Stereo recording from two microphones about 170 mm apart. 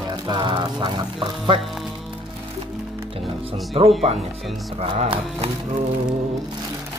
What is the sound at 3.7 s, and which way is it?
Speech, 35° right (ahead or behind).